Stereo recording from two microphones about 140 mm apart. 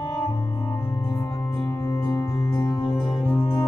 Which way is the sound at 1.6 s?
20° left (ahead or behind).